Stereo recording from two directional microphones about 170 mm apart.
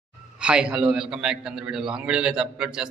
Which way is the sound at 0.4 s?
5° right (ahead or behind).